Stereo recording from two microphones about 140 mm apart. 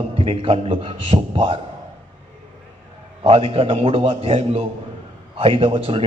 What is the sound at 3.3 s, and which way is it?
A man's voice, 45° right (ahead or behind).